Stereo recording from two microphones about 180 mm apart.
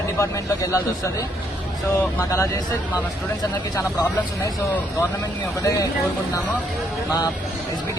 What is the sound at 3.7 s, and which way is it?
Speech, 20° left (ahead or behind).